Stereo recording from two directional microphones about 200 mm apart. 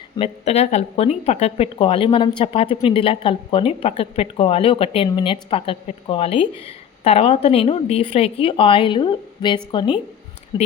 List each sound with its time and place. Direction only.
0.2 s speech: 30° left (ahead or behind)